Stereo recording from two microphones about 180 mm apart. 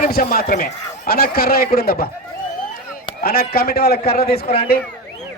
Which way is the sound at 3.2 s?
60° left (ahead or behind).